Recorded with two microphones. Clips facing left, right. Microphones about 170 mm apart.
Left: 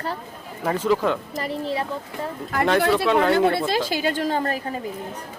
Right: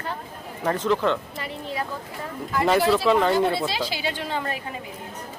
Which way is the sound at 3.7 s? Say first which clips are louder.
Left 5 dB; 45° left (ahead or behind).